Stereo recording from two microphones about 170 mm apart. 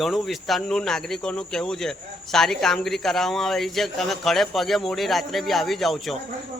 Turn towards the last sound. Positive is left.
turn(degrees=0)  # may be behind; listen again after turning